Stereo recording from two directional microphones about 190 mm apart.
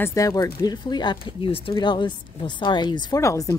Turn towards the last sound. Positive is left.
turn(degrees=15)  # may be behind; listen again after turning